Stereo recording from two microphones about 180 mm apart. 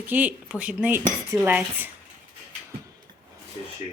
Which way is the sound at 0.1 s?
10° right (ahead or behind).